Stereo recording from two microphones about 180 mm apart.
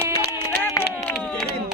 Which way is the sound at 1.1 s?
Centre (ahead or behind).